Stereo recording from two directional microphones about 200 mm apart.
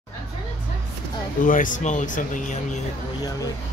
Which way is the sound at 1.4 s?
40° left (ahead or behind).